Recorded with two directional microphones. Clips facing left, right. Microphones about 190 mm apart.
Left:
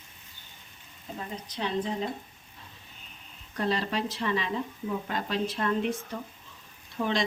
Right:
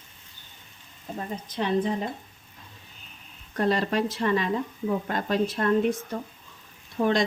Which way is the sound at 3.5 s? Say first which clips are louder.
Right 5 dB; 50° right (ahead or behind).